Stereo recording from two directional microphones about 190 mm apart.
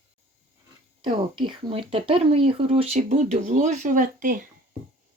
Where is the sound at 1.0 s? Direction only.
25° right (ahead or behind); by 4.4 s 45° right (ahead or behind).